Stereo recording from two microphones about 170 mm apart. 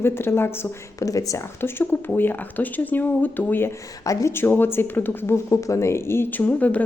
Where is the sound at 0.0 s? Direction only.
15° left (ahead or behind).